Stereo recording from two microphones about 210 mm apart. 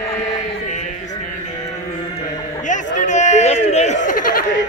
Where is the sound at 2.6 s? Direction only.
35° left (ahead or behind).